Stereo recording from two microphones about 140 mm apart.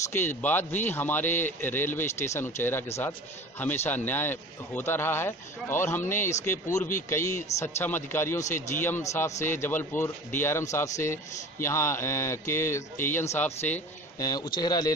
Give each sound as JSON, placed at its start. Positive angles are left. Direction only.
{"t": 0.1, "sound": "speech", "side_deg": 15}
{"t": 7.2, "sound": "a man's voice", "side_deg": 60}
{"t": 7.5, "sound": "speech", "side_deg": 15}
{"t": 14.1, "sound": "a man's voice", "side_deg": 25}